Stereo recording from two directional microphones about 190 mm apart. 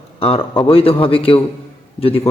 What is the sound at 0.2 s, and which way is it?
A man's voice, 30° left (ahead or behind).